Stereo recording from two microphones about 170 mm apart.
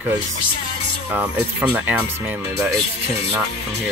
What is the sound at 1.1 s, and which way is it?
Speech, 10° right (ahead or behind).